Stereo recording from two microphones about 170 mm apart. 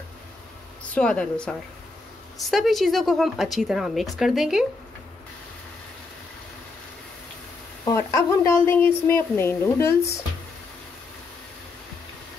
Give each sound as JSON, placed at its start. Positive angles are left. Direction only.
{"t": 0.9, "sound": "a woman's voice", "side_deg": 5}
{"t": 2.5, "sound": "speech", "side_deg": 0}
{"t": 7.8, "sound": "a woman's voice", "side_deg": 20}